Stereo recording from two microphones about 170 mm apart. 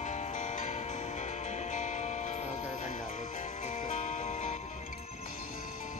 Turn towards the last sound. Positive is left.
turn(degrees=50)  # may be behind; listen again after turning